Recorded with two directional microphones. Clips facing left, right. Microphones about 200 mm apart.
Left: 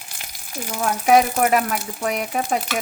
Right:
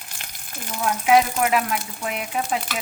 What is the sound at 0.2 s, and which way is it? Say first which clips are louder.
Frying: left 6 dB; 10° left (ahead or behind).